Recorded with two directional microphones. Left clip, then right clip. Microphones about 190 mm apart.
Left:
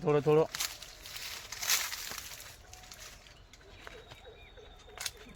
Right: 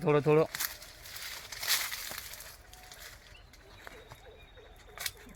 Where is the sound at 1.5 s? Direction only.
25° right (ahead or behind).